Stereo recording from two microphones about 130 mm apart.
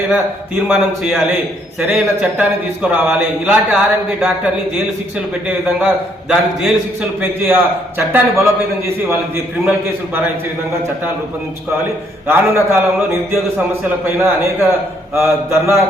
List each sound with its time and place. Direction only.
0.7 s a man's voice: 5° right (ahead or behind)
5.5 s a man's voice: 5° right (ahead or behind)
7.2 s a man's voice: 15° right (ahead or behind)
12.3 s a man's voice: 20° right (ahead or behind)